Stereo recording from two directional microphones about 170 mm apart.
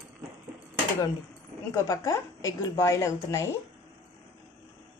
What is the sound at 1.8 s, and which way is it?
A woman's voice, 20° left (ahead or behind).